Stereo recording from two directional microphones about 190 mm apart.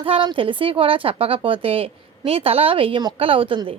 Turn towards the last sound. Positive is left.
turn(degrees=-25)  # may be behind; listen again after turning